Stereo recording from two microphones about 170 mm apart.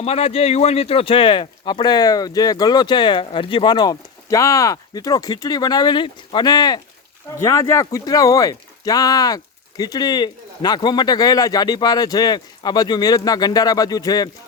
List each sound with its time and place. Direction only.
0.0 s speech: 35° left (ahead or behind)